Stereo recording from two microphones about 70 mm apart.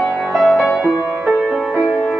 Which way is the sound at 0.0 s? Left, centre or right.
Centre.